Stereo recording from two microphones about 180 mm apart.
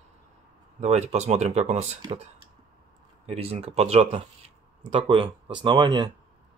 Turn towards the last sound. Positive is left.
turn(degrees=-25)  # may be behind; listen again after turning